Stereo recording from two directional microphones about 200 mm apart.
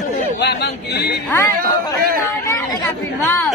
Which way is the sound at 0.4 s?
60° left (ahead or behind).